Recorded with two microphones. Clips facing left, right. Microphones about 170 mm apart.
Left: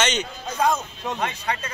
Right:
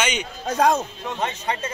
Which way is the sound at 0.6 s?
65° right (ahead or behind).